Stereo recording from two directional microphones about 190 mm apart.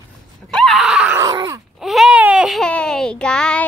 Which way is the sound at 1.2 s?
20° right (ahead or behind).